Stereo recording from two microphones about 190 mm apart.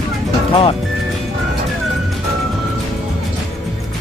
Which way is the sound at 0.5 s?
30° left (ahead or behind).